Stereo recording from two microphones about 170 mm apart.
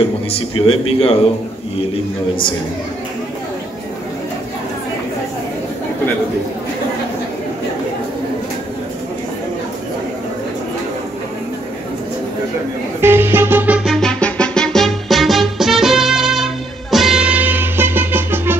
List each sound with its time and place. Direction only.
0.3 s speech: 35° left (ahead or behind)
13.0 s music: 15° right (ahead or behind)